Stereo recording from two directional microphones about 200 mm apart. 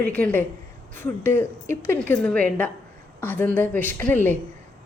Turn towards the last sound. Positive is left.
turn(degrees=10)  # may be behind; listen again after turning